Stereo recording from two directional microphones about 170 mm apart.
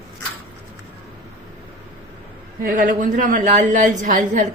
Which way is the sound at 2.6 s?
55° right (ahead or behind).